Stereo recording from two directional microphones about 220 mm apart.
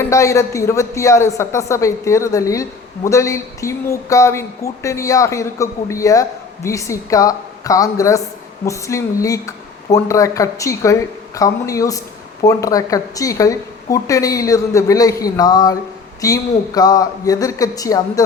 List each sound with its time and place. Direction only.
0.0 s a woman's voice: 15° left (ahead or behind)